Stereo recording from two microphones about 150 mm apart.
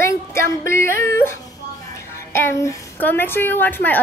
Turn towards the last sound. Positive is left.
turn(degrees=10)  # may be behind; listen again after turning